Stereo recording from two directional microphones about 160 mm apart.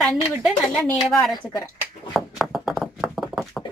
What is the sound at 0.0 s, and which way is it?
A woman's voice, centre (ahead or behind).